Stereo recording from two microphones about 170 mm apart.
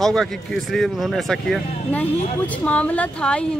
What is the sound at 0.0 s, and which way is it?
Speech, centre (ahead or behind).